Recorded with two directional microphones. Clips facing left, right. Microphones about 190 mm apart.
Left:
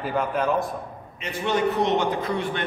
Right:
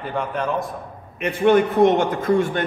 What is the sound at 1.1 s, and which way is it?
A man's voice, 55° right (ahead or behind).